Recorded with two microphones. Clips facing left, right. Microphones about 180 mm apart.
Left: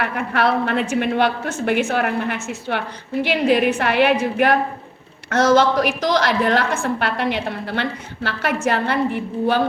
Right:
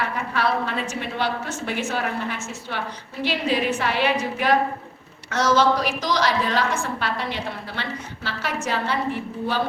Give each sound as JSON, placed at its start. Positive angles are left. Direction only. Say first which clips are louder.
{"t": 0.0, "sound": "a woman's voice", "louder": "left 4 dB", "side_deg": 60}